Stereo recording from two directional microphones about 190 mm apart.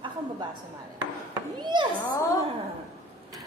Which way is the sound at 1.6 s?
25° right (ahead or behind).